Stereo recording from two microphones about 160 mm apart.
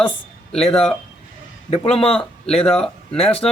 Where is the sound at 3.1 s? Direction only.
35° left (ahead or behind).